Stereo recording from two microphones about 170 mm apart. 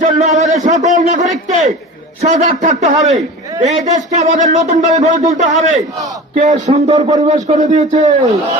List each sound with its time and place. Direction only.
0.0 s a man's voice: 45° right (ahead or behind)